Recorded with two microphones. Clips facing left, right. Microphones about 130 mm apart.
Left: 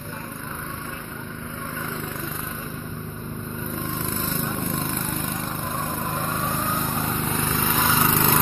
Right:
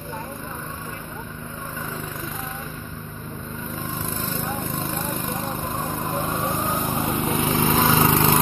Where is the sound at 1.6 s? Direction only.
5° right (ahead or behind).